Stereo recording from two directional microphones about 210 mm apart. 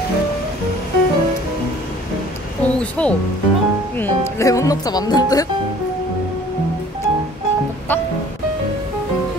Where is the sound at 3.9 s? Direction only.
10° left (ahead or behind).